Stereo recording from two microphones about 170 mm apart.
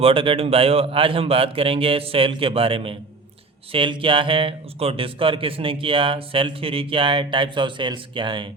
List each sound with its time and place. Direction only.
0.0 s speech: 30° right (ahead or behind)